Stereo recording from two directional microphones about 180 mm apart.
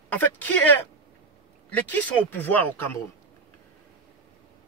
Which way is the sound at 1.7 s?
10° left (ahead or behind).